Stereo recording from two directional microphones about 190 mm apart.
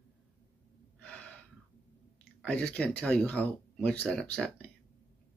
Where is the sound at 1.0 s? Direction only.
5° left (ahead or behind).